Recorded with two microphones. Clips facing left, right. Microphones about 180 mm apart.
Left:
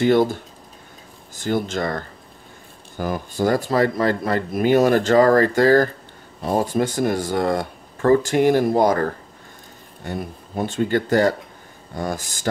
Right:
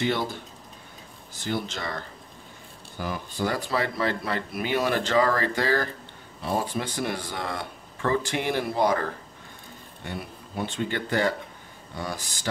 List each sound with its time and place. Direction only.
0.0 s speech: 45° left (ahead or behind)